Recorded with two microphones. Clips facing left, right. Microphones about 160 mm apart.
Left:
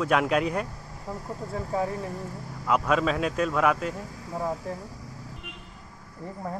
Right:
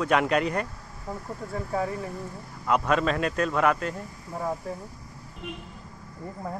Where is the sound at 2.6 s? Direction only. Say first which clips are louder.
Even; 5° left (ahead or behind).